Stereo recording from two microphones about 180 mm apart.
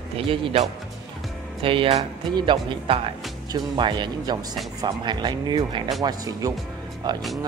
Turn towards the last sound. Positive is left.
turn(degrees=-25)  # may be behind; listen again after turning